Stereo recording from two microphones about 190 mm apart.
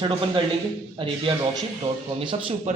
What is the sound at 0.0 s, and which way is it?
A man's voice, 25° right (ahead or behind).